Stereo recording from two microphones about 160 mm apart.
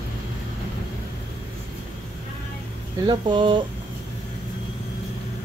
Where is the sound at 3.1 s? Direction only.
30° right (ahead or behind).